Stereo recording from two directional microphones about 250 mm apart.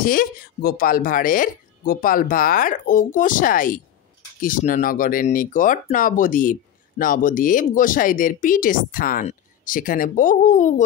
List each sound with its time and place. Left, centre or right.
0.0 s speech: left